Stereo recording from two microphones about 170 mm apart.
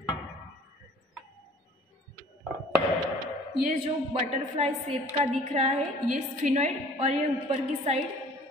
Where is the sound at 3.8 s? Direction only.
35° right (ahead or behind).